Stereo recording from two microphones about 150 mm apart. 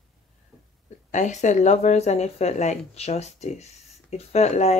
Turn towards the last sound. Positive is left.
turn(degrees=50)  # may be behind; listen again after turning